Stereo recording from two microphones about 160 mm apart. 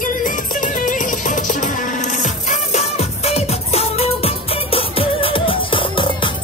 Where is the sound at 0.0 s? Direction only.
55° left (ahead or behind).